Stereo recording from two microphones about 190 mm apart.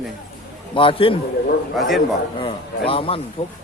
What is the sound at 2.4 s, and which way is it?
Speech, 30° left (ahead or behind).